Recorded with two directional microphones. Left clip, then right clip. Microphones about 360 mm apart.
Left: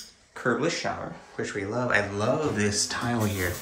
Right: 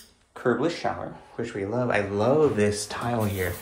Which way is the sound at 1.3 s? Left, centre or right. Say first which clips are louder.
Right 1 dB; centre.